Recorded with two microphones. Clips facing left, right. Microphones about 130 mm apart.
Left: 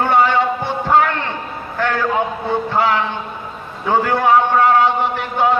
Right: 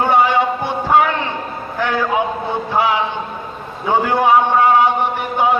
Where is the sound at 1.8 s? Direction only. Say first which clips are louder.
Even; 10° right (ahead or behind).